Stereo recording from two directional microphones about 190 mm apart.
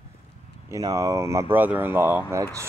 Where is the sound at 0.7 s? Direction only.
20° right (ahead or behind).